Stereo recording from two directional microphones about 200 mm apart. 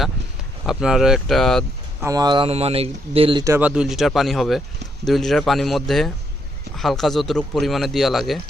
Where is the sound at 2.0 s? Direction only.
15° right (ahead or behind).